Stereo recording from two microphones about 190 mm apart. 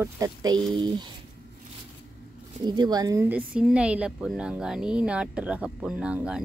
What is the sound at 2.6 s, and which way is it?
Speech, 20° right (ahead or behind).